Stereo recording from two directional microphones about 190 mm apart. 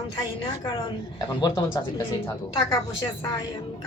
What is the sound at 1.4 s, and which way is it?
Speech, 20° left (ahead or behind).